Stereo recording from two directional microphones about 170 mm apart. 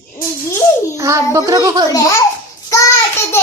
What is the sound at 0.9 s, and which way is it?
Speech, 20° right (ahead or behind).